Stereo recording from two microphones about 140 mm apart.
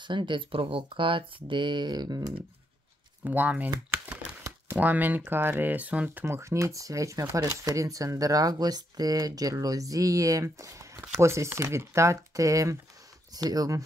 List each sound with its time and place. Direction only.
0.0 s speech: 35° right (ahead or behind)
3.3 s speech: 10° right (ahead or behind)
3.9 s crumpling: 10° right (ahead or behind)
4.4 s a sound: 20° right (ahead or behind)
4.7 s speech: 10° right (ahead or behind)